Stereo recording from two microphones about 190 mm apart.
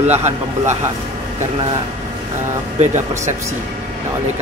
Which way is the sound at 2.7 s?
35° right (ahead or behind).